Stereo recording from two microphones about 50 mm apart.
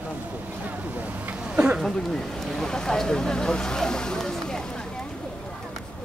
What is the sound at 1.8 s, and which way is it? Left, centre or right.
Speech, centre.